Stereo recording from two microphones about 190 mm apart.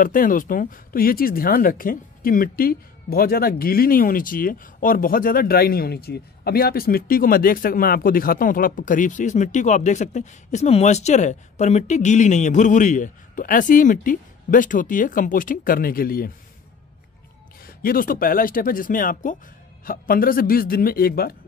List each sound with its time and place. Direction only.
0.0 s speech: 45° left (ahead or behind)
17.6 s speech: 50° left (ahead or behind)